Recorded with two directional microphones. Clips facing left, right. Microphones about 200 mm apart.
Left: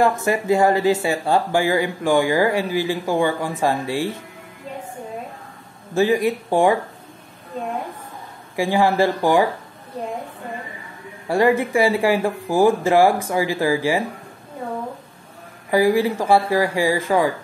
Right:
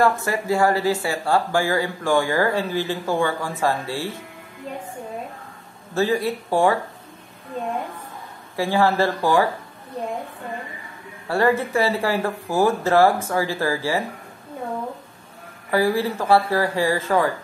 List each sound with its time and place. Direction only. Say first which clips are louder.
0.0 s speech: left 2 dB; 20° left (ahead or behind)
5.9 s speech: left 3 dB; 15° left (ahead or behind)
8.5 s speech: left 2 dB; 15° left (ahead or behind)
11.2 s speech: left 3 dB; 15° left (ahead or behind)
15.7 s speech: left 3 dB; 15° left (ahead or behind)